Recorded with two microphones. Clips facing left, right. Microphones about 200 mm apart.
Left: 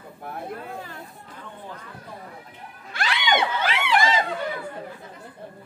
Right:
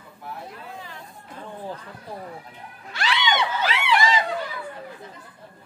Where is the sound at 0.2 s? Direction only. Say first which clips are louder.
Left 4 dB; 50° left (ahead or behind).